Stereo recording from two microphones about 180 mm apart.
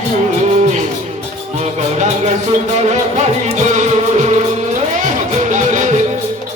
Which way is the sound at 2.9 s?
40° right (ahead or behind).